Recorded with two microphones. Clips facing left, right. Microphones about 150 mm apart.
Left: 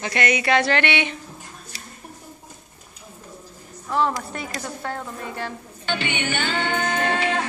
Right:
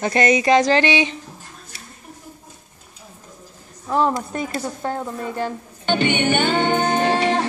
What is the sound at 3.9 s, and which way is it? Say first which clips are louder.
Speech: right 3 dB; 35° right (ahead or behind).